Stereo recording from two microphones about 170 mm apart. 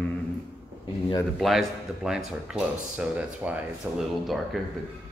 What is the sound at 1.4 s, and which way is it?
Speech, centre (ahead or behind).